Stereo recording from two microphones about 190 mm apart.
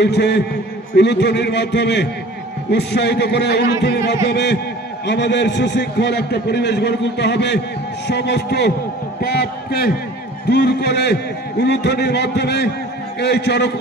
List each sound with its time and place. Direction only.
0.0 s a man's voice: 60° left (ahead or behind)